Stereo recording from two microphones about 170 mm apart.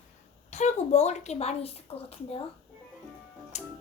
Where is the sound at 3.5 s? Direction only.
45° left (ahead or behind).